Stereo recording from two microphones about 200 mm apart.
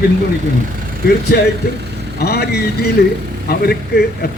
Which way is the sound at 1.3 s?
50° left (ahead or behind).